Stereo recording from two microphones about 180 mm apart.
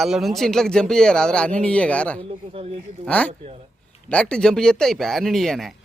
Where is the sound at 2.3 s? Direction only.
35° right (ahead or behind).